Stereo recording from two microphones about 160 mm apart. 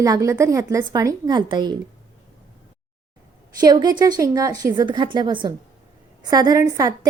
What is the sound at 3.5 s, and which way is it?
A woman's voice, 25° right (ahead or behind).